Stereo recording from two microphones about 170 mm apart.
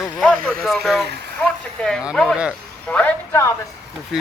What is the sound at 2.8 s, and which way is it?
Speech, 10° left (ahead or behind).